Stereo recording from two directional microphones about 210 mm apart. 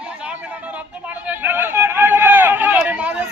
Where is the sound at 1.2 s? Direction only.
10° right (ahead or behind).